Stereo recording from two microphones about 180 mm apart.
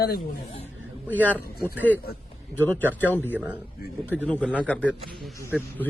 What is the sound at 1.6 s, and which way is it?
Speech, 10° left (ahead or behind).